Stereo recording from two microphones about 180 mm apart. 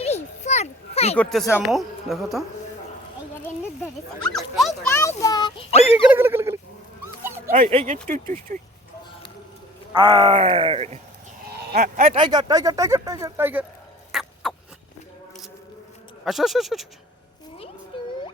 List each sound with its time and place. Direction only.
0.0 s a sound: 35° left (ahead or behind)
1.1 s speech: 5° left (ahead or behind)
3.8 s speech: 5° left (ahead or behind)
4.9 s a child's voice: 15° left (ahead or behind)
5.8 s a sound: 10° right (ahead or behind)
7.0 s dog: 15° right (ahead or behind)
8.0 s speech: 50° right (ahead or behind)
9.9 s speech: 25° right (ahead or behind)
11.4 s sheep: 60° right (ahead or behind)
12.1 s speech: 25° right (ahead or behind)
14.1 s rodents: centre (ahead or behind)
16.2 s speech: centre (ahead or behind)
17.9 s music: 30° left (ahead or behind)